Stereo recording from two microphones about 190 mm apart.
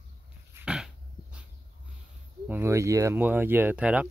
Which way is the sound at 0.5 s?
5° right (ahead or behind).